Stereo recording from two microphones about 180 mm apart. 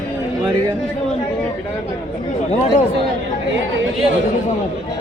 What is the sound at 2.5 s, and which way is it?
Speech, 40° left (ahead or behind).